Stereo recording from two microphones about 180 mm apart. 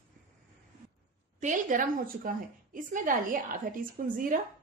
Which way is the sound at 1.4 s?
45° right (ahead or behind).